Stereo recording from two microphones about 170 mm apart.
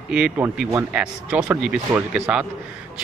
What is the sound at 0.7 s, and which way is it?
Speech, 15° right (ahead or behind).